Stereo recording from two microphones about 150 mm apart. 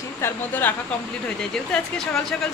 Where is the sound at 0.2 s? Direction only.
15° left (ahead or behind).